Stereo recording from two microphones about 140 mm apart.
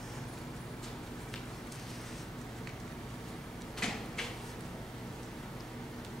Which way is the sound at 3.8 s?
5° left (ahead or behind).